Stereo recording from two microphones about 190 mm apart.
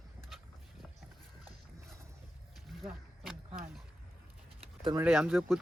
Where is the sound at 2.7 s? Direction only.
Centre (ahead or behind).